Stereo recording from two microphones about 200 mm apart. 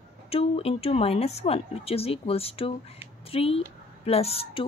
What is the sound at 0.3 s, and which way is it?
A woman's voice, 30° left (ahead or behind).